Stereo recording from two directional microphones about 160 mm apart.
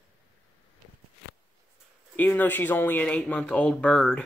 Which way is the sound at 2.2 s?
10° left (ahead or behind).